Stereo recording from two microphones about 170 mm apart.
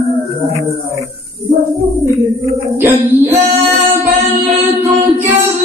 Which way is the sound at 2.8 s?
10° right (ahead or behind).